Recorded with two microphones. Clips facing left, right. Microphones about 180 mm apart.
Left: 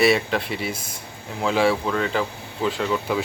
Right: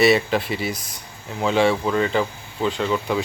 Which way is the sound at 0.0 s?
Centre (ahead or behind).